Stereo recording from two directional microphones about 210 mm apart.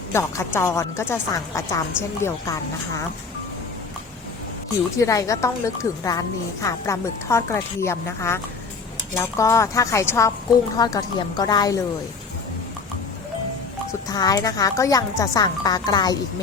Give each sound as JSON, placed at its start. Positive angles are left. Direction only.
{"t": 0.1, "sound": "a woman's voice", "side_deg": 15}
{"t": 4.9, "sound": "a woman's voice", "side_deg": 15}
{"t": 14.1, "sound": "a woman's voice", "side_deg": 20}